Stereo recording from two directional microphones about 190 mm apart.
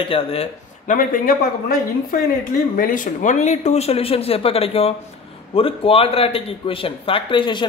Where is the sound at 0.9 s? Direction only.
45° left (ahead or behind).